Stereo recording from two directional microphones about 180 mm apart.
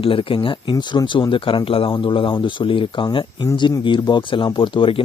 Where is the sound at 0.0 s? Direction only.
30° left (ahead or behind).